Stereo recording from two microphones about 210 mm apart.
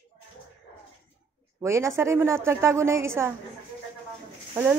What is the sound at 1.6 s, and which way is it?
A woman's voice, 15° right (ahead or behind).